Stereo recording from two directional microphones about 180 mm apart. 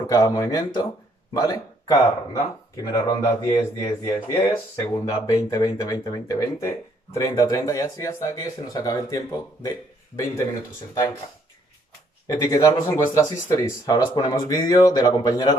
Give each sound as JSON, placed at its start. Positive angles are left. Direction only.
{"t": 0.0, "sound": "speech", "side_deg": 20}
{"t": 12.3, "sound": "speech", "side_deg": 20}